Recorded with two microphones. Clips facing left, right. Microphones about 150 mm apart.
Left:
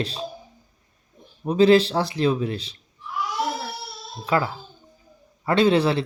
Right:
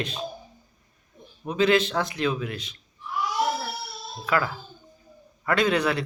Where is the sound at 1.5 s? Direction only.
35° left (ahead or behind).